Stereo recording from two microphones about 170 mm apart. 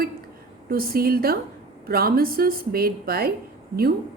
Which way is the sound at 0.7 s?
60° right (ahead or behind).